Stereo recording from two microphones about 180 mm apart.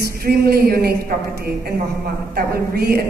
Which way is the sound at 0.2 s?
55° right (ahead or behind).